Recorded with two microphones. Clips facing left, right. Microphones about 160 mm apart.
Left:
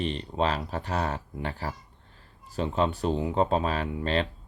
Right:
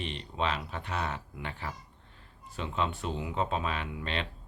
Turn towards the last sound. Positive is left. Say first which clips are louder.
# left 8 dB
turn(degrees=35)  # may be behind; listen again after turning